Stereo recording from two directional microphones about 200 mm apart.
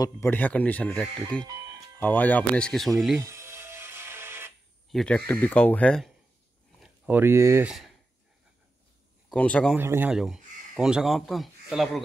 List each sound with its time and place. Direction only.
0.0 s speech: 10° left (ahead or behind)
3.2 s music: 15° right (ahead or behind)
4.9 s speech: 5° left (ahead or behind)
6.8 s speech: 10° right (ahead or behind)
9.3 s speech: 5° left (ahead or behind)
9.8 s speech: 10° right (ahead or behind)